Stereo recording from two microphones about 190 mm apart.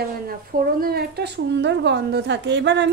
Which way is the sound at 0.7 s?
55° right (ahead or behind).